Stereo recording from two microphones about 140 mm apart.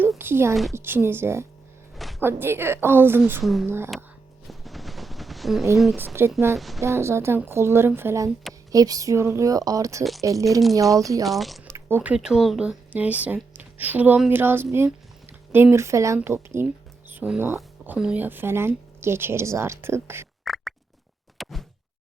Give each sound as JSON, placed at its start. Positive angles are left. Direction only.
{"t": 0.2, "sound": "speech", "side_deg": -15}
{"t": 2.0, "sound": "a sound", "side_deg": 0}
{"t": 2.2, "sound": "speech", "side_deg": -15}
{"t": 3.4, "sound": "speech", "side_deg": 0}
{"t": 4.4, "sound": "a sound", "side_deg": 0}
{"t": 5.7, "sound": "speech", "side_deg": 0}
{"t": 6.2, "sound": "speech", "side_deg": -15}
{"t": 6.6, "sound": "speech", "side_deg": 0}
{"t": 6.8, "sound": "speech", "side_deg": -20}
{"t": 11.2, "sound": "speech", "side_deg": 0}
{"t": 11.6, "sound": "speech", "side_deg": -15}
{"t": 20.4, "sound": "rodents", "side_deg": 0}
{"t": 21.3, "sound": "a sound", "side_deg": 0}